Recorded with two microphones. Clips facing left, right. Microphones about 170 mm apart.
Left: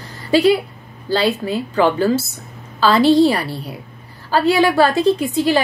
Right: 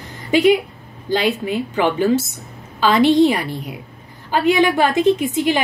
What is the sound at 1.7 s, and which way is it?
Speech, 15° right (ahead or behind).